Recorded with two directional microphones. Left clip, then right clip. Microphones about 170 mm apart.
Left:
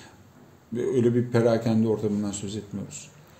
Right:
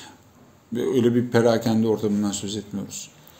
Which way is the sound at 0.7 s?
15° left (ahead or behind).